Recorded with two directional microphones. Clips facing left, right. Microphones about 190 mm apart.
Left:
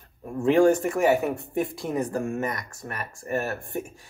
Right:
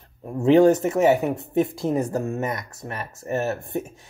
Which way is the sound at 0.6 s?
20° right (ahead or behind).